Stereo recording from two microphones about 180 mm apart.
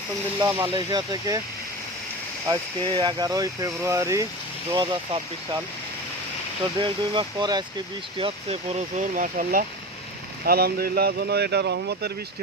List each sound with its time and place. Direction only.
0.3 s speech: 20° right (ahead or behind)
2.5 s speech: 25° right (ahead or behind)
6.7 s speech: 30° right (ahead or behind)
8.2 s speech: 40° right (ahead or behind); by 12.1 s 70° right (ahead or behind)